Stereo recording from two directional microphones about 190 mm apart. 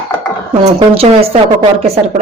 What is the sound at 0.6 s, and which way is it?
Speech, 35° right (ahead or behind).